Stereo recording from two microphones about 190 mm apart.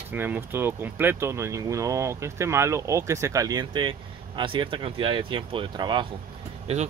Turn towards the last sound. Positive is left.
turn(degrees=-35)  # may be behind; listen again after turning